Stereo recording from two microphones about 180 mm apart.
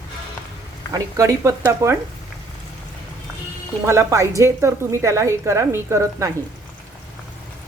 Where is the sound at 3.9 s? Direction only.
15° right (ahead or behind).